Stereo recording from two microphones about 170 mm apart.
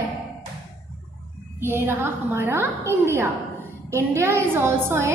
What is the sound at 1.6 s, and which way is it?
A woman's voice, 15° right (ahead or behind).